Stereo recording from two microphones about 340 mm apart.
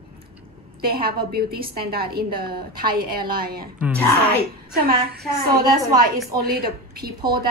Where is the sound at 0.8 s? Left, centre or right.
Right.